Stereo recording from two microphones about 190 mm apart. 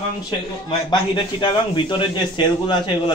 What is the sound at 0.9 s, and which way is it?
A man's voice, 25° left (ahead or behind).